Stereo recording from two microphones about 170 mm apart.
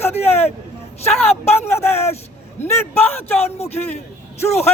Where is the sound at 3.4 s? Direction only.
40° left (ahead or behind).